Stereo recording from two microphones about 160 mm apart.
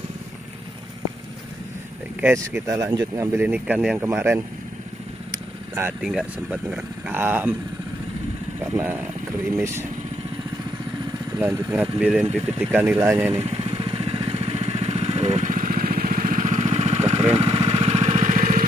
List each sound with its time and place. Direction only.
2.2 s speech: 10° right (ahead or behind)
2.6 s speech: 20° right (ahead or behind)
3.3 s speech: 10° right (ahead or behind)
5.8 s speech: 10° right (ahead or behind)
8.7 s speech: 10° right (ahead or behind)
11.3 s speech: 15° right (ahead or behind)
13.5 s vehicle: 35° right (ahead or behind); by 18.6 s 50° right (ahead or behind)